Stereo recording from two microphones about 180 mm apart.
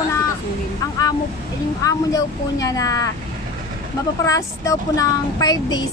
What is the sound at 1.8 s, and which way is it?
Speech, 20° left (ahead or behind).